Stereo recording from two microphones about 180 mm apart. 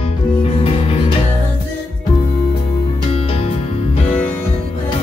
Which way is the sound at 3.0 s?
30° left (ahead or behind).